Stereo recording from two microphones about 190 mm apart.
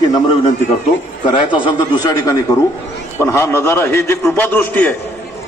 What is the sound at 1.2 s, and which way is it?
A man's voice, 25° left (ahead or behind).